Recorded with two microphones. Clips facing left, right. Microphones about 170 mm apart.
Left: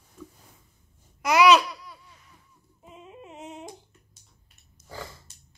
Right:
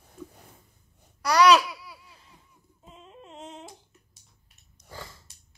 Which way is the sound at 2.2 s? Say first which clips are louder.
Right 1 dB; 25° right (ahead or behind).